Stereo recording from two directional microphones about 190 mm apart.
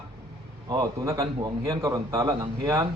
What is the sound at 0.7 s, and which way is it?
A man's voice, 20° right (ahead or behind).